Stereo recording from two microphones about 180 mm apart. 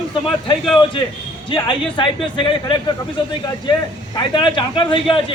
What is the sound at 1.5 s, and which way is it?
A man's voice, 25° left (ahead or behind).